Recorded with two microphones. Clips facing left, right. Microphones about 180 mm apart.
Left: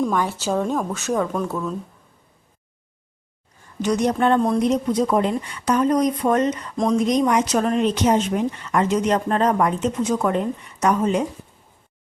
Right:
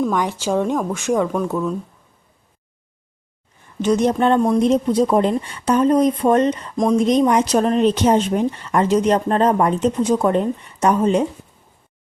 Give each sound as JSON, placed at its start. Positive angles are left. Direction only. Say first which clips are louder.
{"t": 0.1, "sound": "speech", "louder": "right 2 dB", "side_deg": -15}
{"t": 3.8, "sound": "speech", "louder": "right 3 dB", "side_deg": -20}